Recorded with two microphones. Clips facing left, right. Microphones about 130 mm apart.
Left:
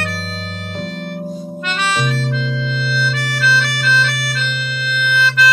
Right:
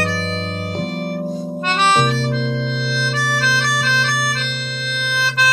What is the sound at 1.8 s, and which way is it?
Harmonica, 35° right (ahead or behind).